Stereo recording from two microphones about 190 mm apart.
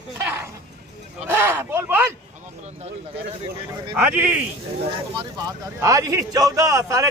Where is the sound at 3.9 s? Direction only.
5° right (ahead or behind).